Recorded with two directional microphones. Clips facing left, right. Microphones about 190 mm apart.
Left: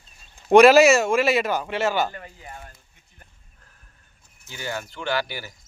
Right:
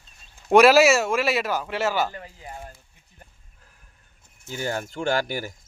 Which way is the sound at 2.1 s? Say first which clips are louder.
Right 1 dB; 25° right (ahead or behind).